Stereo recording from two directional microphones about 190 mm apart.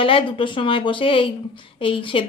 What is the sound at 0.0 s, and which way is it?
A woman's voice, 25° left (ahead or behind).